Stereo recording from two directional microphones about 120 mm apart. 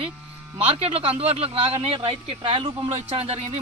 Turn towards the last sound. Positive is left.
turn(degrees=-55)  # may be behind; listen again after turning